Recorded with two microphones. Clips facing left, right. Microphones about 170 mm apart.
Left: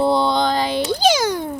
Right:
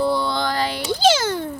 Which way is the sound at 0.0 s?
25° left (ahead or behind).